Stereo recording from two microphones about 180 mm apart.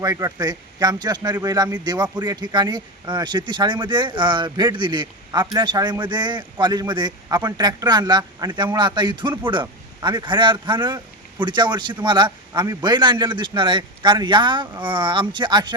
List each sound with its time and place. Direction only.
0.0 s speech: 20° right (ahead or behind)